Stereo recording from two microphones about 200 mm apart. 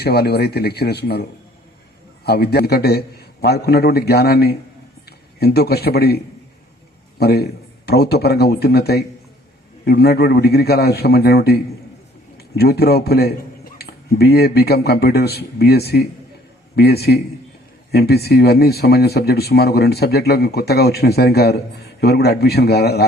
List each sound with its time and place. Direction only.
0.0 s speech: 55° left (ahead or behind)
2.2 s a man's voice: 55° left (ahead or behind)